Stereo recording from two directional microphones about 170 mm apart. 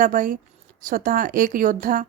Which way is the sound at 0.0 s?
55° right (ahead or behind).